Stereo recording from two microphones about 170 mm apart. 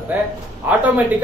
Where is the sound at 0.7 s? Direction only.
10° right (ahead or behind).